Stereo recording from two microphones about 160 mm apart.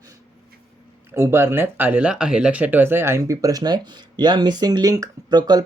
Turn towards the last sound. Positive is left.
turn(degrees=-25)  # may be behind; listen again after turning